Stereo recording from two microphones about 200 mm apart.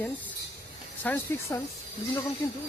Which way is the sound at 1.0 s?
10° left (ahead or behind).